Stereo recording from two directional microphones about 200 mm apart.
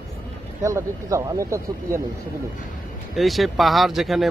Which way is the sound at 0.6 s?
15° right (ahead or behind).